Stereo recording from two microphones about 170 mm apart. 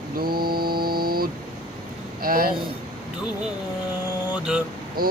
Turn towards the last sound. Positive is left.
turn(degrees=-60)  # may be behind; listen again after turning